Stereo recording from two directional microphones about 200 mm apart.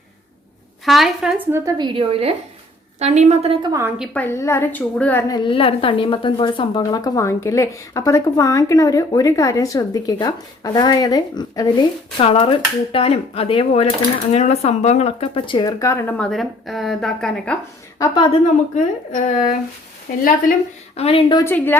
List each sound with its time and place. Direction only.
0.9 s a woman's voice: centre (ahead or behind)
4.1 s a woman's voice: 10° left (ahead or behind)
5.3 s a woman's voice: 25° left (ahead or behind); by 17.6 s 5° left (ahead or behind)
18.0 s a woman's voice: 25° left (ahead or behind)
20.1 s a woman's voice: 45° left (ahead or behind)
20.9 s a woman's voice: 30° left (ahead or behind)
21.4 s a woman's voice: 10° left (ahead or behind)